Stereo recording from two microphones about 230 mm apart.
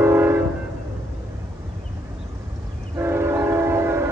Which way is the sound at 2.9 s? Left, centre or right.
Centre.